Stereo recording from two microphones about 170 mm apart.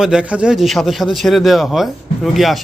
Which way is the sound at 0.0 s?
5° right (ahead or behind).